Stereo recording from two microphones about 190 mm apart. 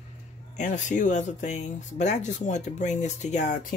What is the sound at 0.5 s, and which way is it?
Speech, 40° left (ahead or behind).